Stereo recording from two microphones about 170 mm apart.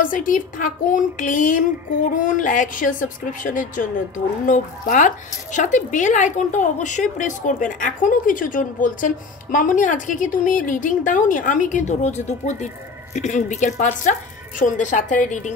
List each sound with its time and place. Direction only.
0.0 s a woman's voice: 55° left (ahead or behind)